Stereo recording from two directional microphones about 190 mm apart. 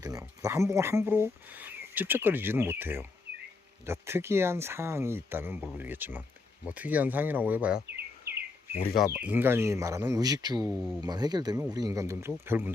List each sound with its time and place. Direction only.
0.0 s speech: 20° right (ahead or behind)
8.3 s chirp: 55° right (ahead or behind)
8.7 s speech: 30° left (ahead or behind)
9.1 s speech: 10° right (ahead or behind)